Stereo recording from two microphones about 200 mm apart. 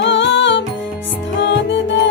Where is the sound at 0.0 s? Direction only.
65° left (ahead or behind).